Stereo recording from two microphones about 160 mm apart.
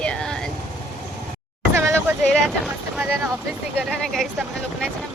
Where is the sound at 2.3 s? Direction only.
Centre (ahead or behind).